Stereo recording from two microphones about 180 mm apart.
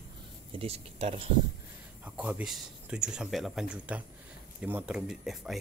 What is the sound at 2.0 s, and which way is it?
Speech, 5° right (ahead or behind).